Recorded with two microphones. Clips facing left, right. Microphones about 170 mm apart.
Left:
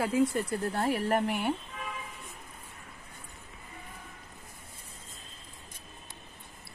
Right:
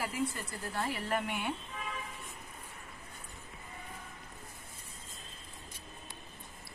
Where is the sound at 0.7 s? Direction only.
50° left (ahead or behind).